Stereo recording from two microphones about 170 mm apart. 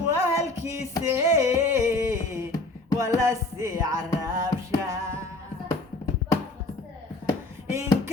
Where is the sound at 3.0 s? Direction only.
20° right (ahead or behind).